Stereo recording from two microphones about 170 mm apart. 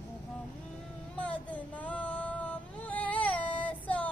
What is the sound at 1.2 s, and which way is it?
Music, 10° left (ahead or behind).